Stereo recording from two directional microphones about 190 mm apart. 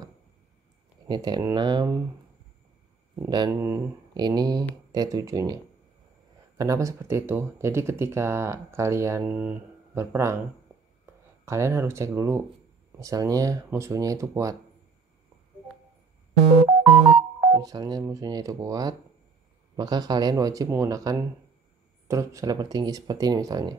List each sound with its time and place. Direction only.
1.0 s speech: 20° right (ahead or behind)
3.2 s speech: 20° right (ahead or behind)
6.6 s speech: 15° right (ahead or behind)
11.4 s speech: 15° right (ahead or behind)
17.5 s speech: 20° right (ahead or behind)